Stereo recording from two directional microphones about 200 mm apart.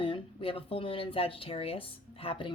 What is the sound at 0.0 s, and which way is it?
Speech, 25° left (ahead or behind).